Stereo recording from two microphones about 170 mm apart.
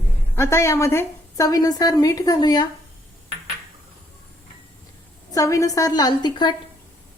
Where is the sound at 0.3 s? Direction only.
15° left (ahead or behind).